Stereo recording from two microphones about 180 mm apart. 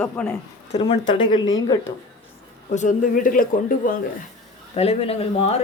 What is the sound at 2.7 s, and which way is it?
Speech, 45° left (ahead or behind).